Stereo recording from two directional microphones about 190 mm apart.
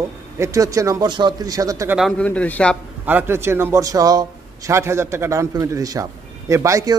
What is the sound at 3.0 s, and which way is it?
A man's voice, 10° right (ahead or behind).